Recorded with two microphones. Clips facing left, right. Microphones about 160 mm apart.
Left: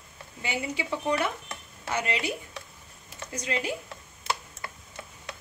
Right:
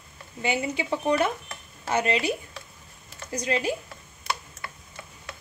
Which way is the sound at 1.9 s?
30° right (ahead or behind).